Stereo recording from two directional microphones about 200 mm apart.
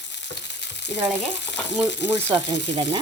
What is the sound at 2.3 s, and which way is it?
Speech, 20° right (ahead or behind).